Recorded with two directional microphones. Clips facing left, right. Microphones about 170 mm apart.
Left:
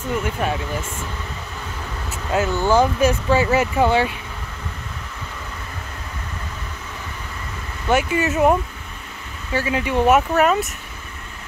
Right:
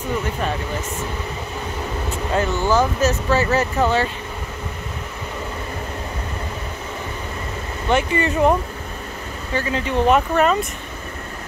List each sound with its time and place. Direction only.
0.2 s speech: 10° left (ahead or behind)
2.0 s speech: 5° left (ahead or behind)
7.9 s speech: 5° left (ahead or behind)